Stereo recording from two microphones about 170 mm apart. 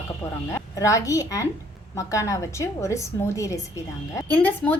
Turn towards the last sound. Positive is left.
turn(degrees=10)  # may be behind; listen again after turning